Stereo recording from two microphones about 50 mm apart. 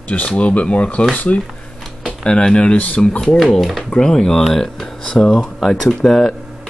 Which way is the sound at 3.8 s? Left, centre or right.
Centre.